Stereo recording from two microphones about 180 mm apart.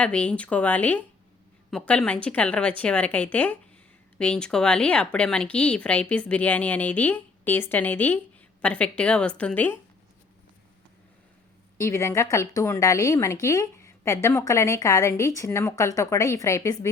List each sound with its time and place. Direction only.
0.0 s a woman's voice: 5° left (ahead or behind)
11.8 s a woman's voice: 15° left (ahead or behind)